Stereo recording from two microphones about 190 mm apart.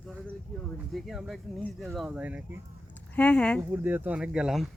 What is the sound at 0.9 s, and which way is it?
Speech, centre (ahead or behind).